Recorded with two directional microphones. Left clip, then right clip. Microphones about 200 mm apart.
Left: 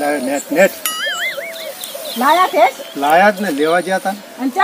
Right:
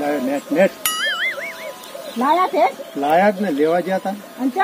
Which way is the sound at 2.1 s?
20° left (ahead or behind).